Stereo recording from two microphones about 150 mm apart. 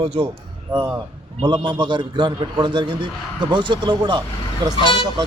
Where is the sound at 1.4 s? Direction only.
30° right (ahead or behind).